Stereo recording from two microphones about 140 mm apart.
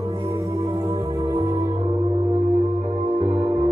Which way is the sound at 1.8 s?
55° right (ahead or behind).